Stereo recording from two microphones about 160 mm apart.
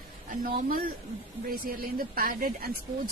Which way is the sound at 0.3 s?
55° right (ahead or behind).